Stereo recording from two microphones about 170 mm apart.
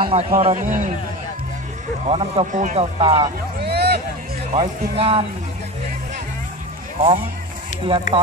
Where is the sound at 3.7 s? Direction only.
75° right (ahead or behind).